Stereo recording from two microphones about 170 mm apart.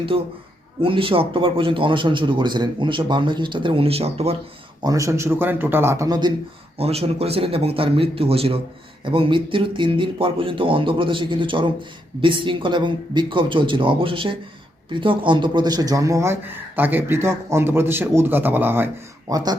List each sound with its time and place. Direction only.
0.1 s speech: 30° right (ahead or behind)
4.8 s speech: 20° right (ahead or behind)
6.7 s speech: 35° right (ahead or behind); by 18.9 s 10° right (ahead or behind)
19.3 s speech: 25° right (ahead or behind)